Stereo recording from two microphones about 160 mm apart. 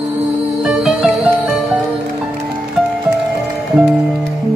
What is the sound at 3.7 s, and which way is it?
Music, 5° right (ahead or behind).